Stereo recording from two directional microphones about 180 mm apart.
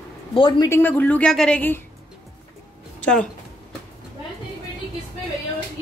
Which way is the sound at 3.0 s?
5° left (ahead or behind).